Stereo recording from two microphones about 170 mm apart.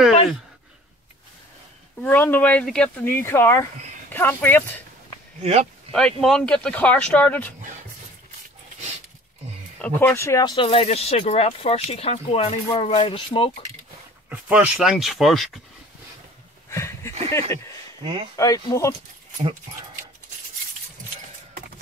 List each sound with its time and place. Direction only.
2.0 s speech: 10° left (ahead or behind)
5.4 s speech: 40° right (ahead or behind)
5.9 s speech: 5° left (ahead or behind)
9.8 s speech: 10° left (ahead or behind); by 13.5 s 30° left (ahead or behind)
14.3 s speech: 10° right (ahead or behind)
16.7 s a sound: 15° left (ahead or behind)
17.3 s speech: 15° left (ahead or behind)
18.0 s speech: 30° right (ahead or behind)
18.3 s speech: 20° left (ahead or behind)